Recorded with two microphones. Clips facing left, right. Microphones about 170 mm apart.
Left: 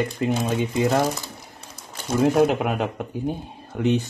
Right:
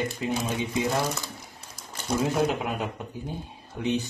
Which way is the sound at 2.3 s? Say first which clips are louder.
Left 7 dB; 60° left (ahead or behind).